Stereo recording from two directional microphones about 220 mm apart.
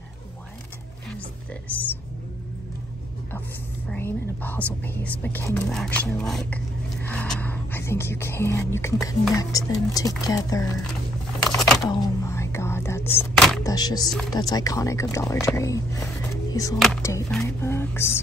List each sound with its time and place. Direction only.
1.0 s speech: 5° left (ahead or behind)
3.9 s speech: 10° left (ahead or behind)
11.4 s a sound: centre (ahead or behind)
11.8 s whispering: 15° left (ahead or behind)
13.7 s speech: 15° left (ahead or behind)
16.7 s speech: centre (ahead or behind)